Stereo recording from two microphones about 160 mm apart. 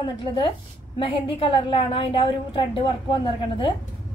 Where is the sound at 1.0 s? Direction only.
30° left (ahead or behind).